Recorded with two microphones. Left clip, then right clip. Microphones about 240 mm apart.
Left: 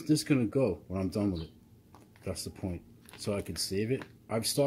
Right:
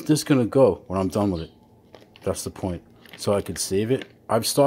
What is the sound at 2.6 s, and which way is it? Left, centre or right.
Speech, centre.